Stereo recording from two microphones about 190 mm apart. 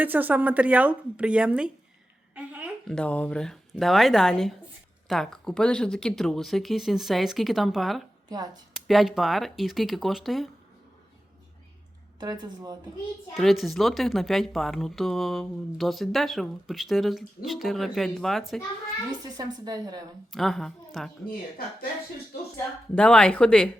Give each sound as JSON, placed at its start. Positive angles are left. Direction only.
{"t": 0.0, "sound": "a woman's voice", "side_deg": -10}
{"t": 2.3, "sound": "a sound", "side_deg": -5}
{"t": 2.9, "sound": "speech", "side_deg": 5}
{"t": 8.3, "sound": "a woman's voice", "side_deg": -20}
{"t": 8.9, "sound": "speech", "side_deg": 0}
{"t": 12.2, "sound": "a woman's voice", "side_deg": -20}
{"t": 13.3, "sound": "speech", "side_deg": 0}
{"t": 19.2, "sound": "a woman's voice", "side_deg": -20}
{"t": 20.3, "sound": "speech", "side_deg": 0}
{"t": 23.0, "sound": "speech", "side_deg": 5}